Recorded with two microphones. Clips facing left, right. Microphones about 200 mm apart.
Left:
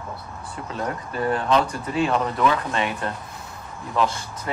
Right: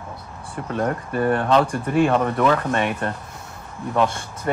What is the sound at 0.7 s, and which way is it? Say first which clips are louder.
Speech: right 5 dB; 55° right (ahead or behind).